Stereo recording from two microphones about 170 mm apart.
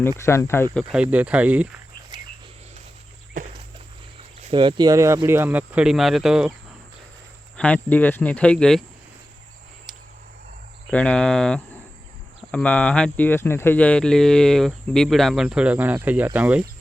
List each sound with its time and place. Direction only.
0.2 s speech: 15° left (ahead or behind)
1.1 s speech: 10° right (ahead or behind)
2.1 s a sound: 25° right (ahead or behind)
4.5 s speech: 25° right (ahead or behind); by 6.5 s 5° right (ahead or behind)
7.5 s speech: 10° left (ahead or behind)
10.9 s speech: 5° left (ahead or behind)